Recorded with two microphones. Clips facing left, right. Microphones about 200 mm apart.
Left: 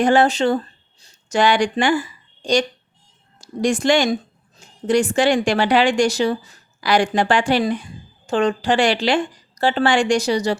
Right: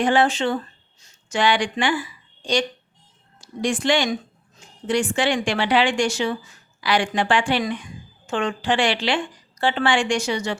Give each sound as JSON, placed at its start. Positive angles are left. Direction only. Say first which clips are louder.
{"t": 0.0, "sound": "a woman's voice", "louder": "left 4 dB", "side_deg": 40}